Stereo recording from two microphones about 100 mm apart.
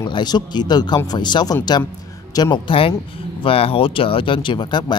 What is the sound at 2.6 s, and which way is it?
Speech, 65° left (ahead or behind).